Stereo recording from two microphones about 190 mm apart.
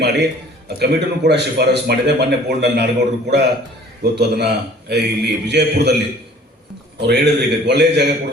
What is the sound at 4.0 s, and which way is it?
A man's voice, 60° right (ahead or behind).